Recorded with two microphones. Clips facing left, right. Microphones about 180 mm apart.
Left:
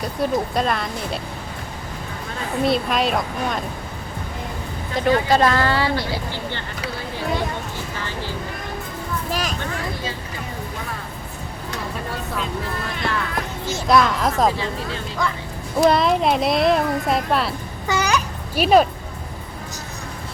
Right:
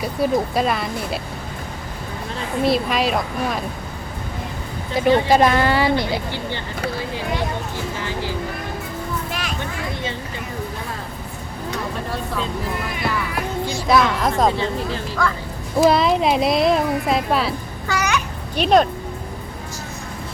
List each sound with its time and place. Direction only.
0.0 s speech: 5° right (ahead or behind)
2.6 s speech: centre (ahead or behind)
4.9 s speech: 5° right (ahead or behind)
9.3 s a sound: 40° left (ahead or behind)
13.0 s music: 10° right (ahead or behind)
13.8 s speech: centre (ahead or behind)
15.8 s speech: centre (ahead or behind)
17.9 s a child's voice: 20° left (ahead or behind)
18.5 s speech: 5° left (ahead or behind)